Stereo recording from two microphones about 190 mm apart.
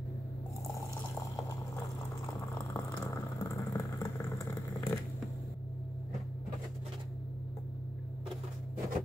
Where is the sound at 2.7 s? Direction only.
20° left (ahead or behind).